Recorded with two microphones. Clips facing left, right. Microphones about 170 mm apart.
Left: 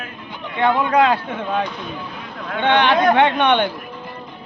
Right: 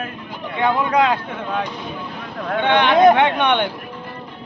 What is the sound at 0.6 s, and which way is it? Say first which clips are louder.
Speech: left 1 dB; 10° right (ahead or behind).